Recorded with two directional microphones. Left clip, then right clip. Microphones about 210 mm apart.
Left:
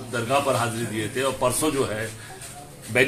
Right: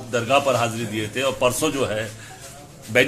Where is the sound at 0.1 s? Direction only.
45° right (ahead or behind).